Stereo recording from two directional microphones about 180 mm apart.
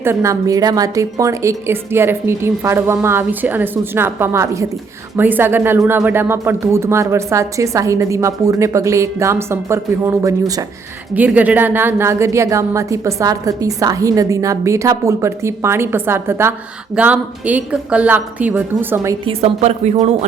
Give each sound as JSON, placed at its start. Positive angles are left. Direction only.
{"t": 0.0, "sound": "speech", "side_deg": -15}
{"t": 19.2, "sound": "speech", "side_deg": -35}